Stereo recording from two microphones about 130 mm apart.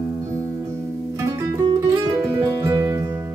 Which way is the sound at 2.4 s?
25° right (ahead or behind).